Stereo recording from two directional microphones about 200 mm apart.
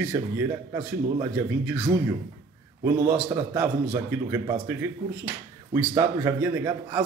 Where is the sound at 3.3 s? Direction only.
15° right (ahead or behind).